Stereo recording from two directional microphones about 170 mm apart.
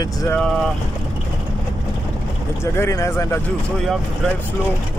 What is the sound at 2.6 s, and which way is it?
Speech, 15° left (ahead or behind).